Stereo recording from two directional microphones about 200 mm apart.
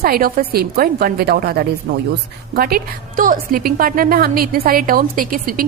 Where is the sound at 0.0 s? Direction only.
45° right (ahead or behind).